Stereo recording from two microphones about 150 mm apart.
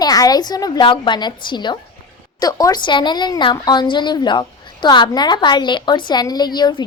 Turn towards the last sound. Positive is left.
turn(degrees=30)  # may be behind; listen again after turning